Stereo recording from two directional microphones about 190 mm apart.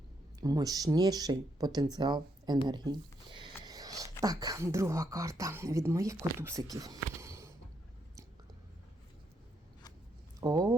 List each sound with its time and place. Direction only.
0.3 s speech: 20° right (ahead or behind)
2.6 s a sound: 20° right (ahead or behind)
4.2 s speech: 20° right (ahead or behind)
10.4 s speech: 20° right (ahead or behind)